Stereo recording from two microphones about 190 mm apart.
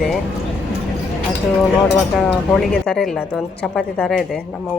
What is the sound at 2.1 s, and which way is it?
Speech, centre (ahead or behind).